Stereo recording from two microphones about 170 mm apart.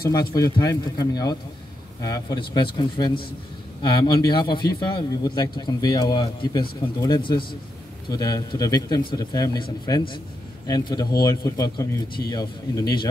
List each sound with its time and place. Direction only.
0.4 s a man's voice: 20° left (ahead or behind)